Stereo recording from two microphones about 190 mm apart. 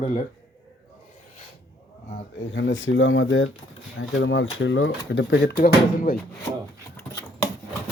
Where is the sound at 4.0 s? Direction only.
75° left (ahead or behind); by 6.2 s 50° left (ahead or behind).